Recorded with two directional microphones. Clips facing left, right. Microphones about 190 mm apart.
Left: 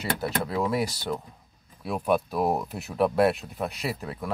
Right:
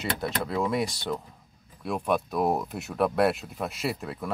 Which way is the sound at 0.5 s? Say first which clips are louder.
Right 1 dB; 5° left (ahead or behind).